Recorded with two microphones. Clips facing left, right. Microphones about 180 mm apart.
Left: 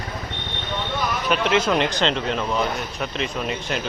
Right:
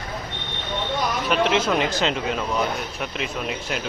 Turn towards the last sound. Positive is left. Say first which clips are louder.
# left 2 dB
turn(degrees=0)  # may be behind; listen again after turning